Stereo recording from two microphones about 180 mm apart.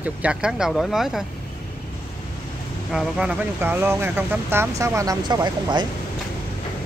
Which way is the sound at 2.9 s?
5° right (ahead or behind).